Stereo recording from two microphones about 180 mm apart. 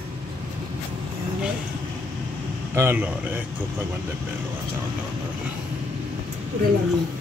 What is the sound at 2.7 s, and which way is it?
Speech, 10° right (ahead or behind).